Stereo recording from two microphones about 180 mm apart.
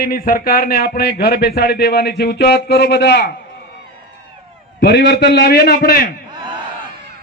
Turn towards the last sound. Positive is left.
turn(degrees=55)  # may be behind; listen again after turning